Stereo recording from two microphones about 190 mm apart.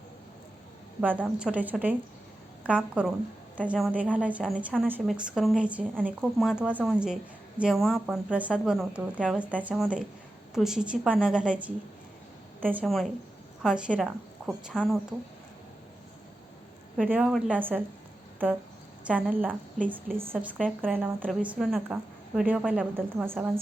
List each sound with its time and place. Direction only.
1.0 s a woman's voice: 10° right (ahead or behind)
12.7 s speech: centre (ahead or behind)
17.0 s a woman's voice: 5° right (ahead or behind)
19.0 s a woman's voice: 5° right (ahead or behind)
20.8 s a woman's voice: 5° left (ahead or behind)